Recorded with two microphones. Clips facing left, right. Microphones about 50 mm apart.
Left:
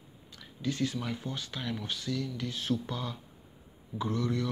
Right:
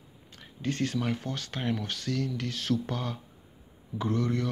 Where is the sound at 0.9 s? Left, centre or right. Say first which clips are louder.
Right 5 dB; right.